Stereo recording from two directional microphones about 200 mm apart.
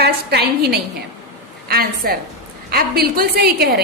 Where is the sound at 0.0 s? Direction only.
55° right (ahead or behind).